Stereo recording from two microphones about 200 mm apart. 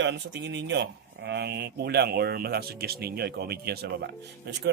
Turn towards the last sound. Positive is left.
turn(degrees=-65)  # may be behind; listen again after turning